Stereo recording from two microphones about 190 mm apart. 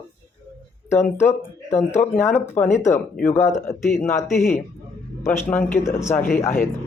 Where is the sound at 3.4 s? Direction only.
40° left (ahead or behind).